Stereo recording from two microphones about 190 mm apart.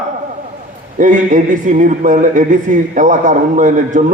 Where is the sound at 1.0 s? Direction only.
40° right (ahead or behind).